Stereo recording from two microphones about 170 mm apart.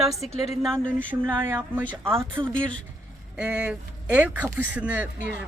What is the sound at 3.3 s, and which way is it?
Speech, 5° right (ahead or behind).